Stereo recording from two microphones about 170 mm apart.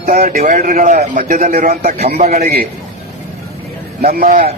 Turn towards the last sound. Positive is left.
turn(degrees=-40)  # may be behind; listen again after turning